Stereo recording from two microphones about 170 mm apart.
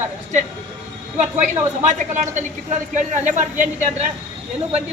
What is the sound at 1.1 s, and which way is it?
A woman's voice, 45° right (ahead or behind).